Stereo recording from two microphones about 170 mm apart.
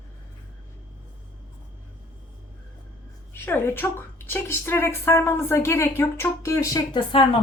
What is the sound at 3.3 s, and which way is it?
A woman's voice, 15° left (ahead or behind).